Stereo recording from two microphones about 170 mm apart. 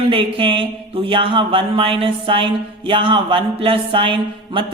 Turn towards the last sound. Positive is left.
turn(degrees=-30)  # may be behind; listen again after turning